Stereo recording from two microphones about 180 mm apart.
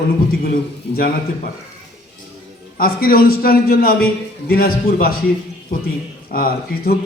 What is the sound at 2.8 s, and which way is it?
A man's voice, 55° left (ahead or behind).